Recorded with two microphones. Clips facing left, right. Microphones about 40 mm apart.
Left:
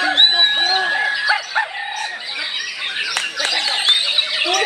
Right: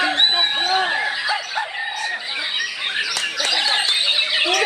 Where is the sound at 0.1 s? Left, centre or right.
Left.